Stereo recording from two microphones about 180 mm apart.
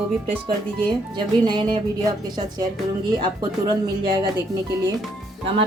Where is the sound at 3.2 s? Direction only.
25° right (ahead or behind).